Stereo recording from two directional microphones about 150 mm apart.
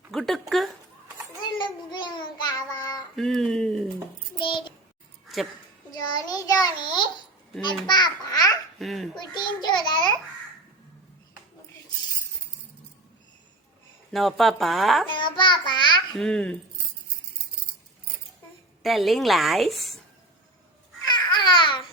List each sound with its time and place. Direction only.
0.1 s speech: centre (ahead or behind)
1.4 s child singing: 30° left (ahead or behind)
3.2 s a sound: centre (ahead or behind)
4.4 s child singing: 35° left (ahead or behind)
5.9 s child singing: 25° left (ahead or behind)
7.6 s babbling: 30° left (ahead or behind)
8.8 s a sound: centre (ahead or behind)
9.1 s a sound: 30° left (ahead or behind)
14.1 s speech: centre (ahead or behind)
15.0 s child singing: 30° left (ahead or behind)
16.1 s speech: 5° left (ahead or behind)
18.8 s a woman's voice: centre (ahead or behind)
21.2 s babbling: 30° left (ahead or behind)